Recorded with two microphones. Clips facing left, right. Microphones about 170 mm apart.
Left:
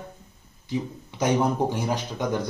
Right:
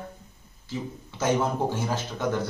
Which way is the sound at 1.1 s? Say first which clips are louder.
Left 2 dB; 15° left (ahead or behind).